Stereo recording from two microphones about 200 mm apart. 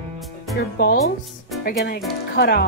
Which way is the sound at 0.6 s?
50° left (ahead or behind).